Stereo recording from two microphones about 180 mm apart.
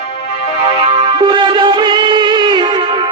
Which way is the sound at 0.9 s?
25° right (ahead or behind).